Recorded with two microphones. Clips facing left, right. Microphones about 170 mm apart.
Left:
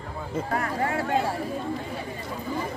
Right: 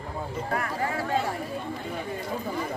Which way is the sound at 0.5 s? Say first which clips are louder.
Left 2 dB; 30° left (ahead or behind).